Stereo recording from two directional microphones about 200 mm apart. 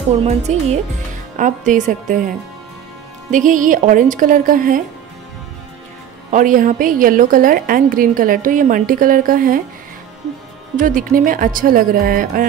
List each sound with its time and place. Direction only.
0.2 s speech: 30° right (ahead or behind)
6.3 s a woman's voice: 40° right (ahead or behind)
10.8 s a woman's voice: 45° right (ahead or behind)